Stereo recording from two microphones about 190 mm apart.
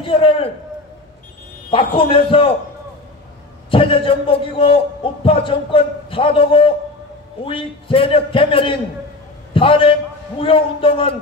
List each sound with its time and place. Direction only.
0.0 s a man's voice: 30° left (ahead or behind)
1.7 s a man's voice: 30° left (ahead or behind)
3.7 s a man's voice: 30° left (ahead or behind)